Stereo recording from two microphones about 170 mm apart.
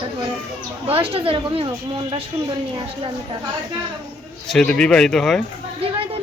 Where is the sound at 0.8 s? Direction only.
35° right (ahead or behind).